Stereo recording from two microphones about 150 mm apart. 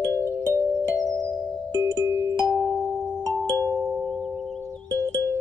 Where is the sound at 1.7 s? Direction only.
20° left (ahead or behind).